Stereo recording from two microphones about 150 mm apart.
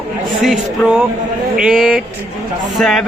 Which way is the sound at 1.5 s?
5° right (ahead or behind).